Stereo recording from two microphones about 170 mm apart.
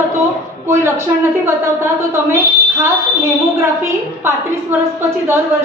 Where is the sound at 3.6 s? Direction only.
15° right (ahead or behind).